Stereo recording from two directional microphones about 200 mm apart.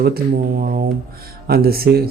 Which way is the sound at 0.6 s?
45° right (ahead or behind).